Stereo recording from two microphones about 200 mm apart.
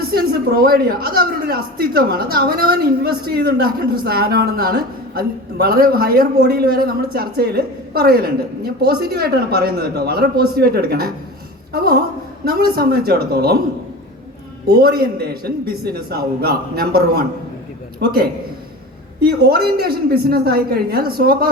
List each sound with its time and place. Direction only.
0.0 s a woman's voice: 50° right (ahead or behind)
14.7 s a woman's voice: 50° right (ahead or behind)